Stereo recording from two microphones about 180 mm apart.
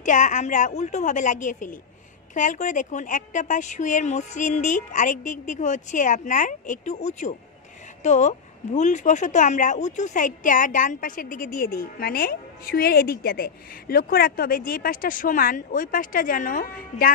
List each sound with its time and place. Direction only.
0.0 s a woman's voice: 45° left (ahead or behind)